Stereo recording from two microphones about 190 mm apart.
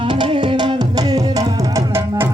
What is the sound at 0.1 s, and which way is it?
Music, 25° right (ahead or behind).